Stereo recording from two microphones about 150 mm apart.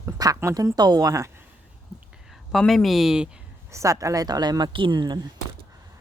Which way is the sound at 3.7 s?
20° right (ahead or behind).